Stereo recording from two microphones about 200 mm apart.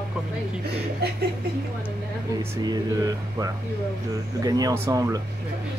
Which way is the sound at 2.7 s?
20° right (ahead or behind).